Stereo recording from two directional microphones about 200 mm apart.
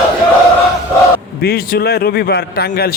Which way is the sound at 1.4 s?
50° left (ahead or behind).